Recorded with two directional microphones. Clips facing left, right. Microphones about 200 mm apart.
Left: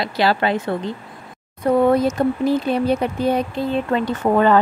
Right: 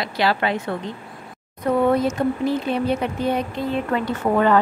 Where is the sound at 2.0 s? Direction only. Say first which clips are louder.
Left 3 dB; 40° left (ahead or behind).